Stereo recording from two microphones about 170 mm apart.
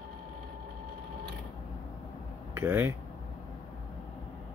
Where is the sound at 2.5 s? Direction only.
15° right (ahead or behind).